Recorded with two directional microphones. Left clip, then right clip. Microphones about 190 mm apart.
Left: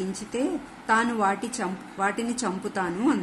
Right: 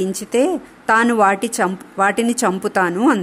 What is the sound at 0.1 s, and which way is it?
A woman's voice, 55° right (ahead or behind).